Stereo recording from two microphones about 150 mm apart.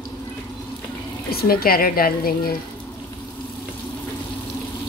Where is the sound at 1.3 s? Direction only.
90° left.